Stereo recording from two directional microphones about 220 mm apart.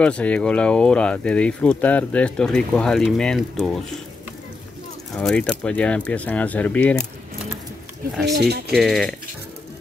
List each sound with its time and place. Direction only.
0.0 s speech: 5° left (ahead or behind)
5.1 s speech: 5° left (ahead or behind)
8.3 s speech: 45° right (ahead or behind)
8.7 s speech: centre (ahead or behind)